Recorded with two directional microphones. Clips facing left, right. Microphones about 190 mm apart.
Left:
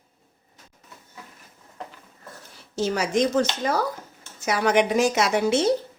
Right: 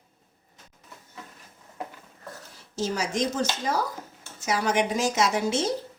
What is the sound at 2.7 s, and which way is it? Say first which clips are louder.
A woman's voice: left 5 dB; 60° left (ahead or behind).